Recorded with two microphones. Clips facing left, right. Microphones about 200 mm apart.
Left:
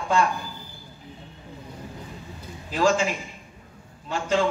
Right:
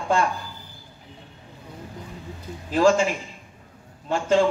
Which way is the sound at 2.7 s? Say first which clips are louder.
Right 4 dB; 50° right (ahead or behind).